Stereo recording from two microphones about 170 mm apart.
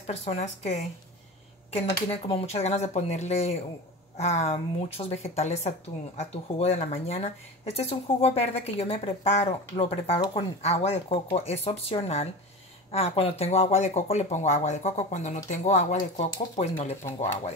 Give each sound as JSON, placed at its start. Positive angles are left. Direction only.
{"t": 0.0, "sound": "speech", "side_deg": 40}
{"t": 2.2, "sound": "speech", "side_deg": 35}